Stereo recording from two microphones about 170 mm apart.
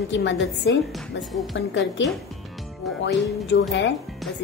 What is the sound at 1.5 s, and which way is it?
A woman's voice, 90° left.